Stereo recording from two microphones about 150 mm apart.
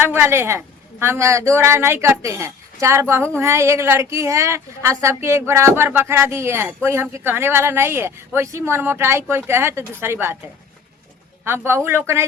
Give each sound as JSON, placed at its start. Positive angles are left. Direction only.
{"t": 0.0, "sound": "speech", "side_deg": -15}
{"t": 11.4, "sound": "speech", "side_deg": -15}